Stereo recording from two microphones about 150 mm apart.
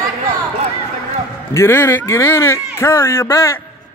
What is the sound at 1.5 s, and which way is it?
Speech, 15° left (ahead or behind).